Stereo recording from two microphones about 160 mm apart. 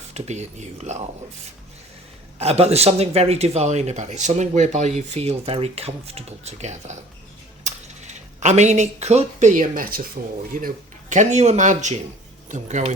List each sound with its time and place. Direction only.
0.1 s speech: 45° right (ahead or behind)
2.4 s speech: 40° right (ahead or behind); by 10.7 s 60° right (ahead or behind)
11.1 s speech: 50° right (ahead or behind)